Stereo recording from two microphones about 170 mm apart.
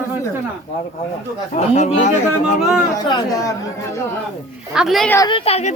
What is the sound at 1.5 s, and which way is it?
Speech, 40° left (ahead or behind).